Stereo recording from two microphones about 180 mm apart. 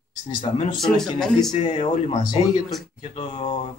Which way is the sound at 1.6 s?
40° left (ahead or behind).